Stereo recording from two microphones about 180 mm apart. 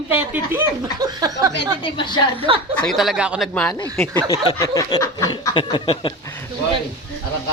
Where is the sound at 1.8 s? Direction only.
25° left (ahead or behind).